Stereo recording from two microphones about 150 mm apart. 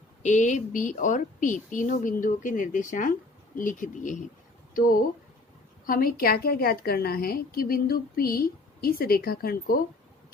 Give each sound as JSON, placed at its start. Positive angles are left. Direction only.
{"t": 0.2, "sound": "a woman's voice", "side_deg": 55}
{"t": 4.7, "sound": "a woman's voice", "side_deg": 70}